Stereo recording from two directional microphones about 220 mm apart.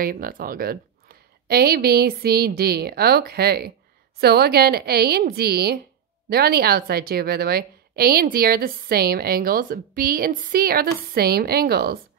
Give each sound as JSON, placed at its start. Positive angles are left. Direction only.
{"t": 0.0, "sound": "a woman's voice", "side_deg": -40}